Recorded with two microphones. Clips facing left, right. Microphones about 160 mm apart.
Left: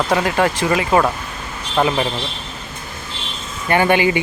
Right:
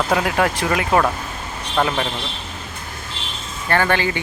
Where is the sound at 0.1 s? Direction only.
Centre (ahead or behind).